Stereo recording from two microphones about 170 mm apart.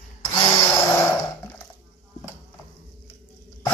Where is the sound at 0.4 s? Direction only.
15° left (ahead or behind).